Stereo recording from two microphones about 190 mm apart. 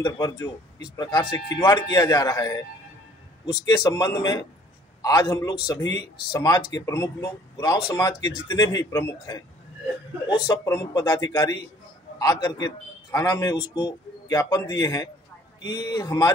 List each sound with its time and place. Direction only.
0.0 s a man's voice: 15° left (ahead or behind)
3.6 s a man's voice: 20° left (ahead or behind)